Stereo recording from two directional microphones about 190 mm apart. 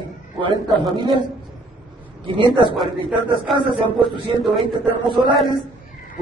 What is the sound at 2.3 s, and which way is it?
A man's voice, 25° right (ahead or behind).